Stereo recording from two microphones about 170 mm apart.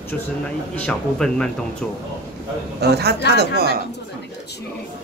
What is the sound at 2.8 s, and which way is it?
Speech, 75° right (ahead or behind).